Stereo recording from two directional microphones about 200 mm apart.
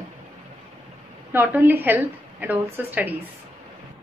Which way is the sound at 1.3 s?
10° right (ahead or behind).